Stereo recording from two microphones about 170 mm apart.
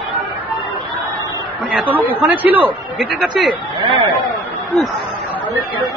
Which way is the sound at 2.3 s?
10° right (ahead or behind).